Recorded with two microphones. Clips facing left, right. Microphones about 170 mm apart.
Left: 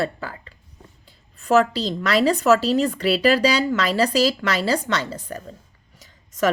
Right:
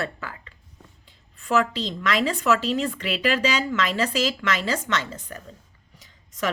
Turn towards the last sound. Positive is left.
turn(degrees=45)  # may be behind; listen again after turning